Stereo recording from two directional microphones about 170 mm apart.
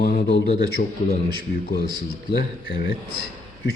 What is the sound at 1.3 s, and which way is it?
Speech, 65° left (ahead or behind).